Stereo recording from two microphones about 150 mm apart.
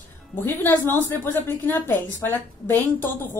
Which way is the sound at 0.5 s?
15° left (ahead or behind).